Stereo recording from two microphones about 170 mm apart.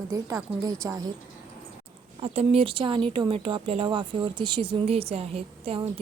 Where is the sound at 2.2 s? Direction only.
35° right (ahead or behind).